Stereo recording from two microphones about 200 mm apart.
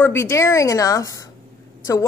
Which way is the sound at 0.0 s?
10° left (ahead or behind).